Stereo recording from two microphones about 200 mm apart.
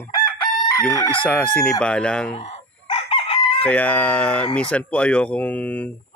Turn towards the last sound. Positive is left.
turn(degrees=10)  # may be behind; listen again after turning